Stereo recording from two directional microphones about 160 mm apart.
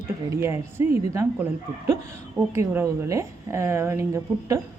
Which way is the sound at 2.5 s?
20° right (ahead or behind).